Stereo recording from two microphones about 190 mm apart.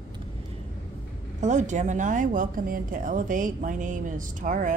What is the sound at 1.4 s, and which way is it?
A woman's voice, 40° right (ahead or behind).